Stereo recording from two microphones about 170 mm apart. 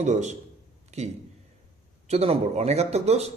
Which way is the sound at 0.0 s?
45° right (ahead or behind).